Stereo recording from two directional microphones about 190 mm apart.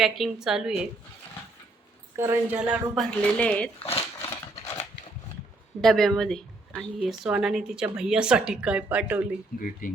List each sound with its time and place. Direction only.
0.0 s a woman's voice: centre (ahead or behind)
2.1 s a woman's voice: 10° right (ahead or behind)
2.9 s speech: 5° left (ahead or behind)
5.8 s a woman's voice: centre (ahead or behind)
9.5 s speech: 50° left (ahead or behind)